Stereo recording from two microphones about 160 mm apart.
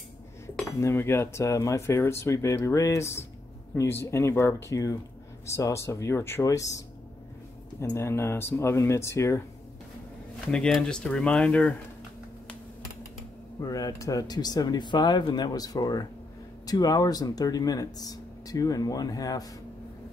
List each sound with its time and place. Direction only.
0.7 s speech: 15° left (ahead or behind)
7.9 s speech: 15° left (ahead or behind)
10.5 s speech: 5° left (ahead or behind)
13.6 s speech: 20° left (ahead or behind)